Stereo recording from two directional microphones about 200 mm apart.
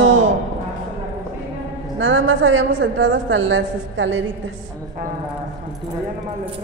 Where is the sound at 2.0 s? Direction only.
70° right (ahead or behind).